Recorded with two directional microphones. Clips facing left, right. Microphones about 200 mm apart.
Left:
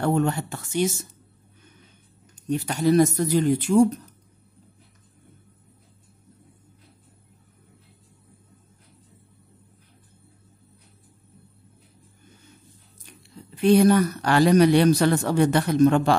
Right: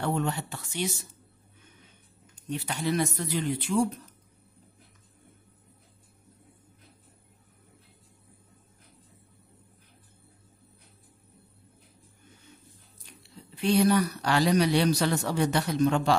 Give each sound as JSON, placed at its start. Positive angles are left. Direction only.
{"t": 0.0, "sound": "a man's voice", "side_deg": 50}
{"t": 2.5, "sound": "a man's voice", "side_deg": 45}
{"t": 13.6, "sound": "a man's voice", "side_deg": 50}